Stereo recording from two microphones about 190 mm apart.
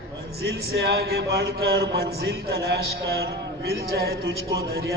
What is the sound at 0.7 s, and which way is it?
A man's voice, 60° right (ahead or behind).